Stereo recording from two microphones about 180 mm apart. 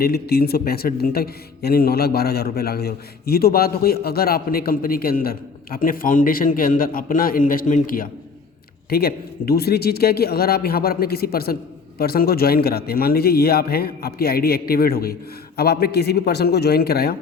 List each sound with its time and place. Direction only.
0.0 s speech: 60° left (ahead or behind)